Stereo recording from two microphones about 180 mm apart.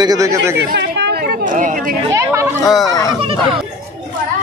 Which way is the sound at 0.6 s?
70° right (ahead or behind).